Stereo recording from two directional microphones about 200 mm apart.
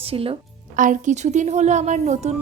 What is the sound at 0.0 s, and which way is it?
Speech, 30° right (ahead or behind).